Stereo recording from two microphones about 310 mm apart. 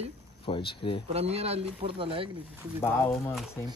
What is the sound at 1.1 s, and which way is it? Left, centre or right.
A man's voice, centre.